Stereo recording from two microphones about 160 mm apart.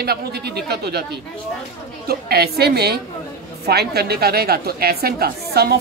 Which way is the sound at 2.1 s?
75° right (ahead or behind).